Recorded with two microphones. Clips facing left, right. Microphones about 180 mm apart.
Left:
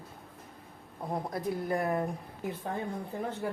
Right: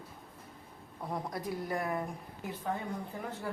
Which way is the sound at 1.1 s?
25° left (ahead or behind).